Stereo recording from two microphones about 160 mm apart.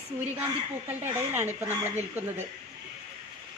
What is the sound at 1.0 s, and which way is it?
Speech, 15° right (ahead or behind).